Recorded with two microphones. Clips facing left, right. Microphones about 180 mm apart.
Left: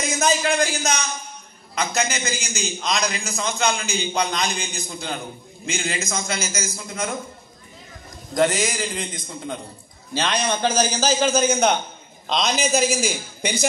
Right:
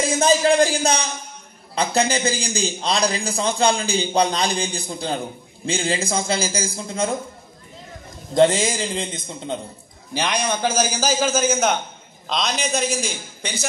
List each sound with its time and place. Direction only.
0.0 s a man's voice: 30° right (ahead or behind)
8.4 s a man's voice: 25° right (ahead or behind)
10.1 s a man's voice: 15° right (ahead or behind); by 13.7 s 10° left (ahead or behind)